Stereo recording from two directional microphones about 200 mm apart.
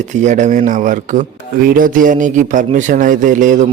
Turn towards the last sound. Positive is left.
turn(degrees=-40)  # may be behind; listen again after turning